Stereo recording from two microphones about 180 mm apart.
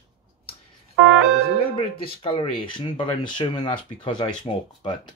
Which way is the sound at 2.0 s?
30° left (ahead or behind).